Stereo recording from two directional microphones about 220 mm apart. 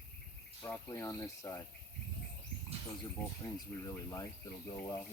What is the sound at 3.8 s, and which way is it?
Speech, 15° left (ahead or behind).